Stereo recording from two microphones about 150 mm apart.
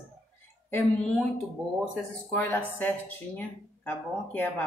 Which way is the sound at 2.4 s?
15° left (ahead or behind).